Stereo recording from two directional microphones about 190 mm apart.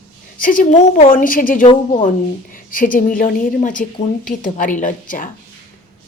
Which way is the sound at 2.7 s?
45° left (ahead or behind).